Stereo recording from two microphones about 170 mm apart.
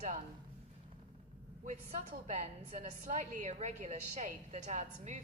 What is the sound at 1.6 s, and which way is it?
A woman's voice, 40° right (ahead or behind).